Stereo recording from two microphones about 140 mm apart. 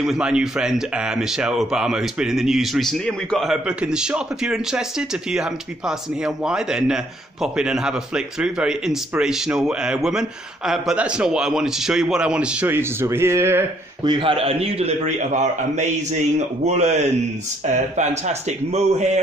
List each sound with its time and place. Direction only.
0.0 s speech: 5° right (ahead or behind)
14.0 s a man's voice: 35° right (ahead or behind); by 19.2 s 55° right (ahead or behind)